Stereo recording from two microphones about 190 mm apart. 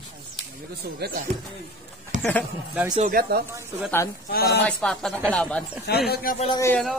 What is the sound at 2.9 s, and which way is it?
Speech, 50° right (ahead or behind).